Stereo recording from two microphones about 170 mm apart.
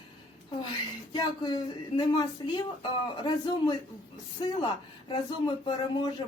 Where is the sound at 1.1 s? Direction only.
25° left (ahead or behind).